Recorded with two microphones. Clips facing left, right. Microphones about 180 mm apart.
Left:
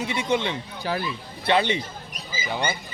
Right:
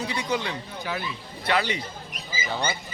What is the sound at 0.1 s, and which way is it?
Speech, 25° left (ahead or behind).